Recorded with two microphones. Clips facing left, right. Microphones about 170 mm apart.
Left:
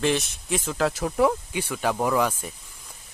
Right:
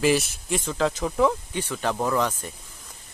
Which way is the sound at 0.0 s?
5° right (ahead or behind).